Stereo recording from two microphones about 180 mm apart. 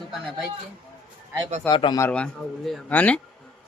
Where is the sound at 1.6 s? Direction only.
25° left (ahead or behind).